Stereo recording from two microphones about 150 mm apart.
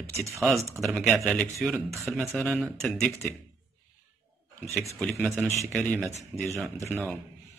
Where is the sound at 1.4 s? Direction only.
10° left (ahead or behind).